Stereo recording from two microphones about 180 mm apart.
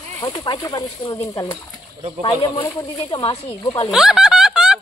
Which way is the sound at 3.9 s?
Centre (ahead or behind).